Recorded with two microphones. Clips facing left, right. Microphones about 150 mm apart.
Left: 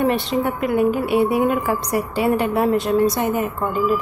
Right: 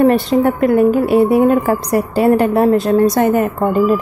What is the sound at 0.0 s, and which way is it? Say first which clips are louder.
A woman's voice: right 8 dB; 40° right (ahead or behind).